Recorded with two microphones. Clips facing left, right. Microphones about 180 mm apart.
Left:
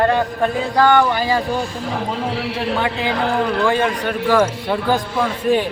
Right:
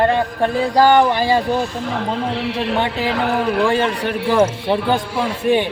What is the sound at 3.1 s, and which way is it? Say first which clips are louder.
Speech: right 1 dB; 5° right (ahead or behind).